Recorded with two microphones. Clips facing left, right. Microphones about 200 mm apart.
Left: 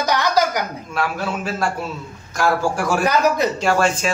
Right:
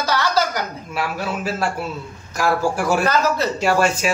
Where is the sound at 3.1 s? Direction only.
15° left (ahead or behind).